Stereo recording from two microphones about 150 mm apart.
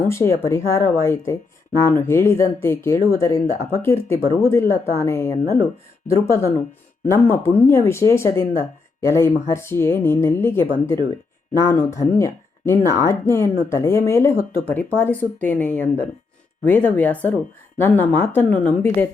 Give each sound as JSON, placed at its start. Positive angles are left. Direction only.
{"t": 0.0, "sound": "speech", "side_deg": 20}